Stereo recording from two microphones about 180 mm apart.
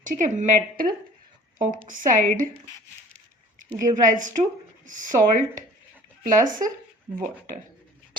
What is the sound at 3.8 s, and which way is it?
A woman's voice, 45° right (ahead or behind).